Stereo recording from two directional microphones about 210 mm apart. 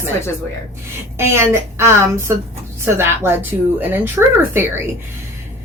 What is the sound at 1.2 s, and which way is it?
A woman's voice, 10° right (ahead or behind).